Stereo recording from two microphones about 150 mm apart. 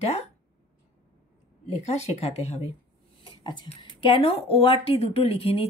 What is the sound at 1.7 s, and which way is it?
Speech, 45° left (ahead or behind).